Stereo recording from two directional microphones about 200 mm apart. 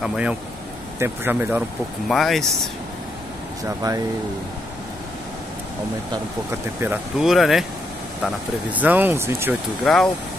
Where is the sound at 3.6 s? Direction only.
15° right (ahead or behind).